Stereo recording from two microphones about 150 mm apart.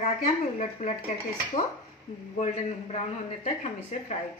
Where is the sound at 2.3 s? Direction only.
50° left (ahead or behind).